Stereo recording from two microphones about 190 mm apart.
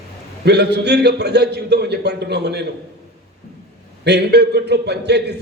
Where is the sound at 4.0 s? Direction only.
60° right (ahead or behind).